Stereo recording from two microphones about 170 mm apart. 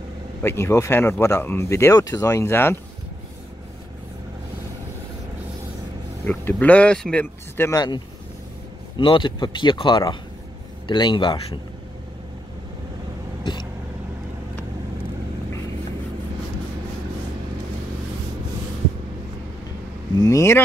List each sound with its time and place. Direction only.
0.4 s speech: 15° left (ahead or behind)
6.2 s speech: 10° left (ahead or behind)
8.9 s speech: 30° left (ahead or behind)
20.2 s speech: 20° left (ahead or behind)